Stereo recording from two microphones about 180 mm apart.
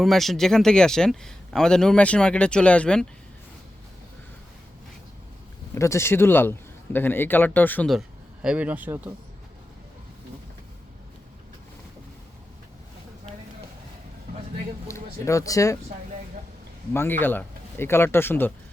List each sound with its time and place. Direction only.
0.0 s a man's voice: centre (ahead or behind)
5.7 s a man's voice: 15° left (ahead or behind); by 9.1 s 10° right (ahead or behind)
14.8 s speech: 15° left (ahead or behind)
16.9 s a man's voice: 10° left (ahead or behind)